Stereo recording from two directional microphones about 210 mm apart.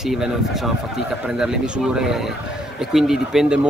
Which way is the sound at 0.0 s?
Centre (ahead or behind).